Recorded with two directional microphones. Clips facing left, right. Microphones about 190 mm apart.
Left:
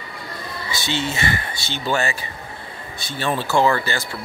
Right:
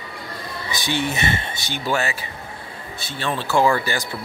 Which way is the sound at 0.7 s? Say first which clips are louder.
Right 1 dB; 15° right (ahead or behind).